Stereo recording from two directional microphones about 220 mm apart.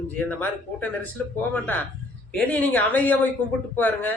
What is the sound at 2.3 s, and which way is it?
A man's voice, 5° left (ahead or behind).